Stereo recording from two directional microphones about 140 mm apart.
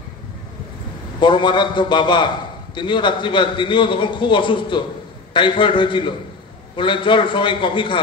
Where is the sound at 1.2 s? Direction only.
35° left (ahead or behind).